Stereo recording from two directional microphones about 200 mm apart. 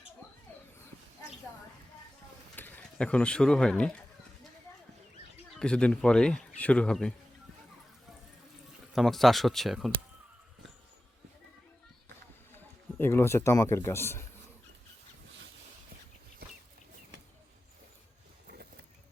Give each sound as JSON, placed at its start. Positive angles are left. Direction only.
{"t": 2.6, "sound": "speech", "side_deg": 10}
{"t": 5.5, "sound": "speech", "side_deg": 5}
{"t": 9.0, "sound": "speech", "side_deg": 0}
{"t": 13.0, "sound": "a man's voice", "side_deg": 10}
{"t": 18.4, "sound": "a sound", "side_deg": -50}